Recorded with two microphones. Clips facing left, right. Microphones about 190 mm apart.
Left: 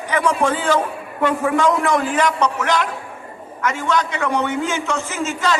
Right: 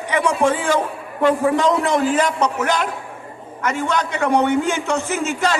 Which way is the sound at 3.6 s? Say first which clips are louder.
Even; 50° right (ahead or behind).